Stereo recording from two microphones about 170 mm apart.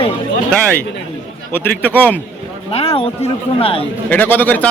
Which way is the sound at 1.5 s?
10° left (ahead or behind).